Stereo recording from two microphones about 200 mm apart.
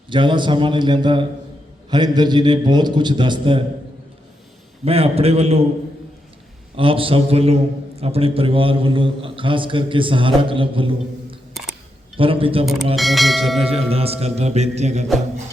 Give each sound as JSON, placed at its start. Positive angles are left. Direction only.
{"t": 0.1, "sound": "a man's voice", "side_deg": -25}
{"t": 4.9, "sound": "music", "side_deg": -30}
{"t": 6.7, "sound": "a man's voice", "side_deg": -25}
{"t": 12.6, "sound": "speech", "side_deg": 0}
{"t": 13.6, "sound": "a man's voice", "side_deg": -30}
{"t": 13.9, "sound": "music", "side_deg": -30}